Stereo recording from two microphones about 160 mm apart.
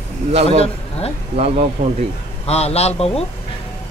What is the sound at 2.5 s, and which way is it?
Speech, 40° left (ahead or behind).